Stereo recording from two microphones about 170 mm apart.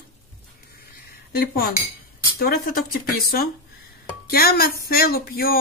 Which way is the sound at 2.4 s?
65° left (ahead or behind).